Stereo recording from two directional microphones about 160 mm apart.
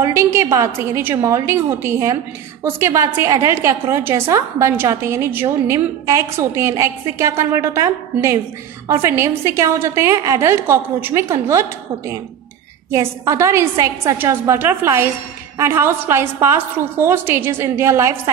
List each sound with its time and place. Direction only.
0.0 s a woman's voice: 15° right (ahead or behind)
12.9 s a woman's voice: 20° right (ahead or behind)